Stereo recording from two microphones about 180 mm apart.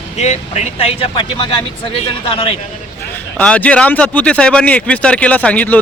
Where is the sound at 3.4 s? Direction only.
5° left (ahead or behind).